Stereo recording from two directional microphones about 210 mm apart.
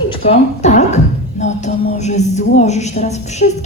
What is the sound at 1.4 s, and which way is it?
A woman's voice, 35° left (ahead or behind).